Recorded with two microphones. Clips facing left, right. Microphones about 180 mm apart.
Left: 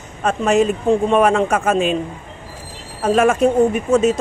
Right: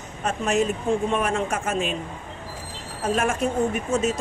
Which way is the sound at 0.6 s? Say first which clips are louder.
Left 5 dB; 90° left.